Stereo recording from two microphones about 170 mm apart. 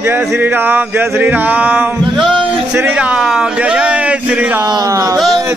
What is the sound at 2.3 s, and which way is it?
A man's voice, 5° right (ahead or behind).